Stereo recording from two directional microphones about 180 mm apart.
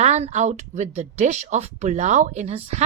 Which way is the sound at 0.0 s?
40° right (ahead or behind).